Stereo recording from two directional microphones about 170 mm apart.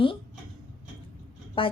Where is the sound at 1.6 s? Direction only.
30° left (ahead or behind).